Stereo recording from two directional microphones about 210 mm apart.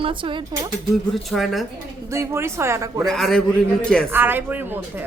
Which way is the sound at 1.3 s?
Centre (ahead or behind).